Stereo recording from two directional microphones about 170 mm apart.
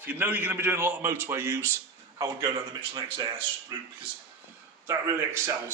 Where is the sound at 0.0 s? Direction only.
10° right (ahead or behind).